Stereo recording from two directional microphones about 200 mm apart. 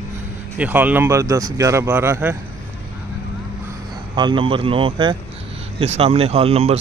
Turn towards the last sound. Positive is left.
turn(degrees=-30)  # may be behind; listen again after turning